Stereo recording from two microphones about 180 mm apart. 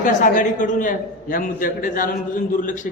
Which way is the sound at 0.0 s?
45° left (ahead or behind).